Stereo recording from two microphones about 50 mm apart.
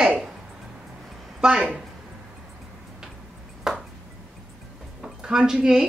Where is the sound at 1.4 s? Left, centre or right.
Centre.